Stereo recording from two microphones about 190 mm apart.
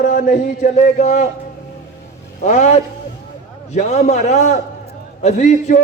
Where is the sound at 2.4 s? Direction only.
35° left (ahead or behind).